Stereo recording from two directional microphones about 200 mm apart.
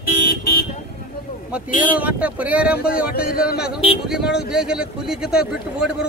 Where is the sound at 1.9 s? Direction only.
5° right (ahead or behind).